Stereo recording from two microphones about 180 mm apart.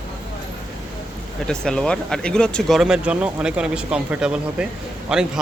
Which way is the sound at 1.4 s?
5° left (ahead or behind).